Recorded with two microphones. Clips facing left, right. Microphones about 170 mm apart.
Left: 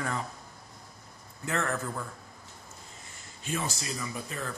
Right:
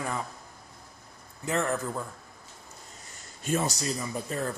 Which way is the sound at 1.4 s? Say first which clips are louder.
Right 3 dB; 15° right (ahead or behind).